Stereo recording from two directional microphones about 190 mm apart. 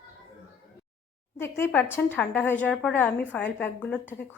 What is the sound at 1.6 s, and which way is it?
Speech, 10° left (ahead or behind).